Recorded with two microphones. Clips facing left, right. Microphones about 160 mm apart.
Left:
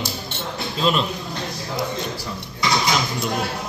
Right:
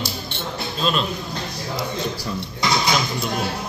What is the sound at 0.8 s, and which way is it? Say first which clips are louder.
Speech: left 2 dB; 20° left (ahead or behind).